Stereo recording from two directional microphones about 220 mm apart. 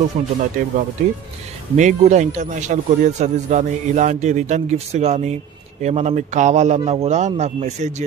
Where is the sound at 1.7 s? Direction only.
35° right (ahead or behind).